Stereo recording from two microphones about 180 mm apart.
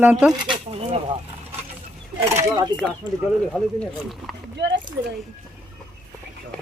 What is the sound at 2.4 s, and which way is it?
Snake, 20° right (ahead or behind).